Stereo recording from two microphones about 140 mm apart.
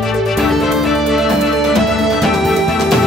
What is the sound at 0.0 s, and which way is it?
Music, centre (ahead or behind).